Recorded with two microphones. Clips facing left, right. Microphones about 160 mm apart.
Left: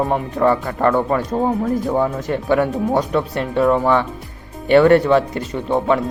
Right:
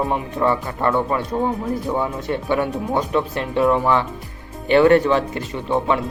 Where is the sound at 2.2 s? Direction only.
45° left (ahead or behind).